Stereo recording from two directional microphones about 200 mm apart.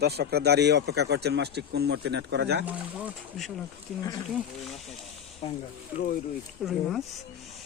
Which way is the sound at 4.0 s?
15° left (ahead or behind).